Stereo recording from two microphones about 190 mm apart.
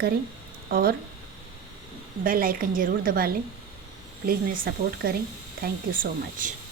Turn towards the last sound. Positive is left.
turn(degrees=-45)  # may be behind; listen again after turning